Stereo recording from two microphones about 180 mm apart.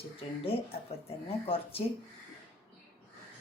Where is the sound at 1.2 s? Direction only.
30° left (ahead or behind).